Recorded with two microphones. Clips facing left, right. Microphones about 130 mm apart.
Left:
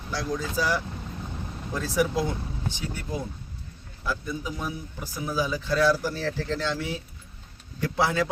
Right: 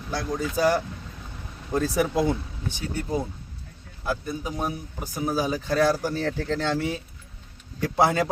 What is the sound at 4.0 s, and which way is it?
Speech, 50° right (ahead or behind).